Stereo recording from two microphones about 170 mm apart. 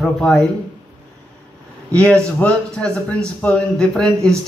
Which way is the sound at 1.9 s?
5° left (ahead or behind).